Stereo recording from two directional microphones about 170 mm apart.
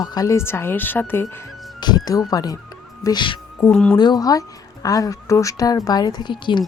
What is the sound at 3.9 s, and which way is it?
Speech, 25° left (ahead or behind).